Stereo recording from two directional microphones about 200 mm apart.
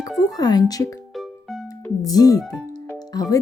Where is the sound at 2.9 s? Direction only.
20° left (ahead or behind).